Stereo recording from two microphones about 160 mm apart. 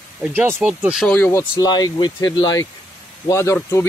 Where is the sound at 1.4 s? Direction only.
25° left (ahead or behind).